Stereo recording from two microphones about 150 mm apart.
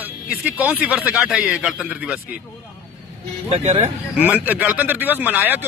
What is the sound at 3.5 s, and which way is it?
Speech, 45° right (ahead or behind).